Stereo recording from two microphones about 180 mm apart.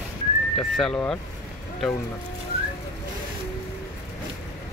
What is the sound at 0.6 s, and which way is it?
Speech, 5° left (ahead or behind).